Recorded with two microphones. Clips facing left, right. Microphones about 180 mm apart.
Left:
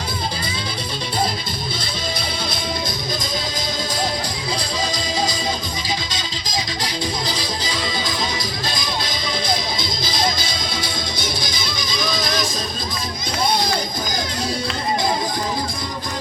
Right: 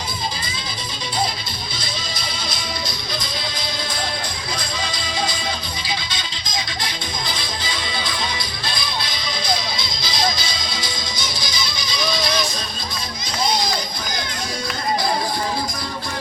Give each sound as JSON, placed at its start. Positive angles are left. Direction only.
{"t": 2.1, "sound": "music", "side_deg": 55}
{"t": 4.5, "sound": "music", "side_deg": 35}